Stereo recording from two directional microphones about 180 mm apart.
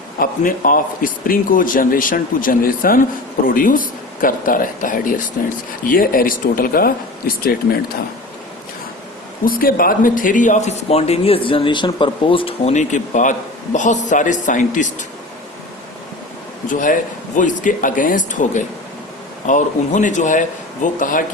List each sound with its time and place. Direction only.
0.2 s a man's voice: 50° left (ahead or behind)
9.5 s a man's voice: 55° left (ahead or behind)
16.6 s a man's voice: 45° left (ahead or behind)